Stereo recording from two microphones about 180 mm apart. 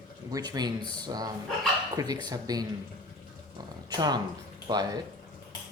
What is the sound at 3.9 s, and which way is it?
Speech, 25° right (ahead or behind).